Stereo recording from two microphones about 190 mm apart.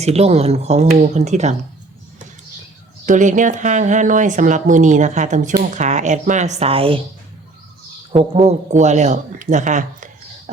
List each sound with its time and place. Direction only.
0.0 s speech: 35° right (ahead or behind)
3.1 s speech: 40° right (ahead or behind)
8.4 s speech: 40° right (ahead or behind)